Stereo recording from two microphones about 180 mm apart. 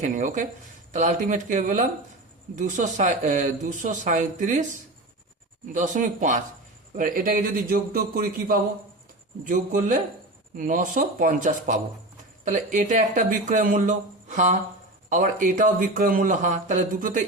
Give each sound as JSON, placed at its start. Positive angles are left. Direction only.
{"t": 0.0, "sound": "speech", "side_deg": -45}
{"t": 5.7, "sound": "speech", "side_deg": -45}